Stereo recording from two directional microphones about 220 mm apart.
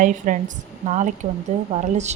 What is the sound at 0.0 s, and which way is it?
A woman's voice, 35° right (ahead or behind).